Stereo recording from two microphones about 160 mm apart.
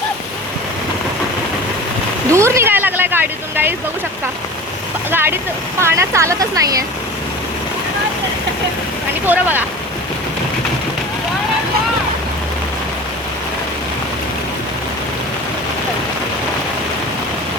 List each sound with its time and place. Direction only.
2.3 s vehicle: 15° right (ahead or behind)
5.1 s speech: 15° right (ahead or behind)
9.2 s speech: 10° right (ahead or behind)